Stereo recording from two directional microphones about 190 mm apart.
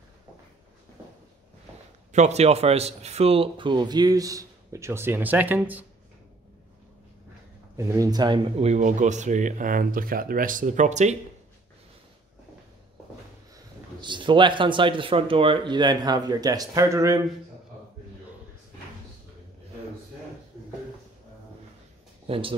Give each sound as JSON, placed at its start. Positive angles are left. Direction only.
{"t": 2.1, "sound": "speech", "side_deg": -35}
{"t": 7.7, "sound": "speech", "side_deg": -20}
{"t": 14.0, "sound": "speech", "side_deg": -25}
{"t": 22.3, "sound": "speech", "side_deg": -30}